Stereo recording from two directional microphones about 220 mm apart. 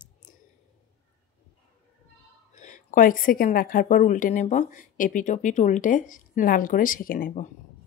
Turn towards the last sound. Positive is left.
turn(degrees=40)  # may be behind; listen again after turning